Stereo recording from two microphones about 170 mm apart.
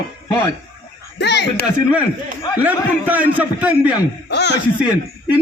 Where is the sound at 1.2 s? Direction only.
85° left.